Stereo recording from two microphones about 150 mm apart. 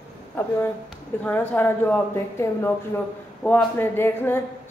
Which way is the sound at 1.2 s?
15° left (ahead or behind).